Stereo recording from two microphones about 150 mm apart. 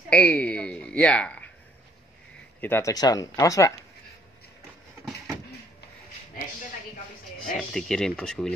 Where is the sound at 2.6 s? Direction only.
20° left (ahead or behind).